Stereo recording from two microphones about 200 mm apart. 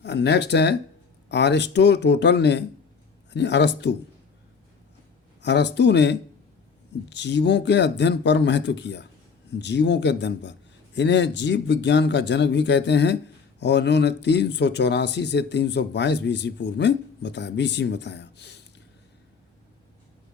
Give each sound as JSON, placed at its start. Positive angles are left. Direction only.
{"t": 0.0, "sound": "speech", "side_deg": 60}
{"t": 5.4, "sound": "speech", "side_deg": 60}